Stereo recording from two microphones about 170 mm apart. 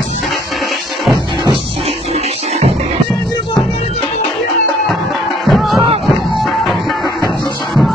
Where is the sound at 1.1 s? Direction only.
25° right (ahead or behind).